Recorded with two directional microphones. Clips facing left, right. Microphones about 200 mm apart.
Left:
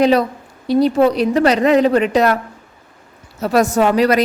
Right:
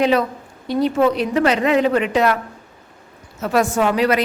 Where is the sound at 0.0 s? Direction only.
35° left (ahead or behind).